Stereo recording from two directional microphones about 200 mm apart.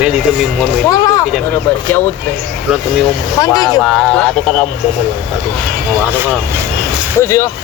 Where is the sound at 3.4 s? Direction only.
20° left (ahead or behind).